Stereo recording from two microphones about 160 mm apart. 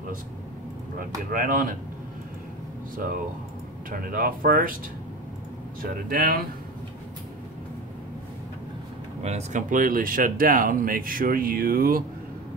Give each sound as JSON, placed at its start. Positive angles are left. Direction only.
{"t": 1.3, "sound": "speech", "side_deg": -60}
{"t": 3.9, "sound": "speech", "side_deg": -65}
{"t": 5.8, "sound": "speech", "side_deg": -65}
{"t": 9.2, "sound": "speech", "side_deg": -45}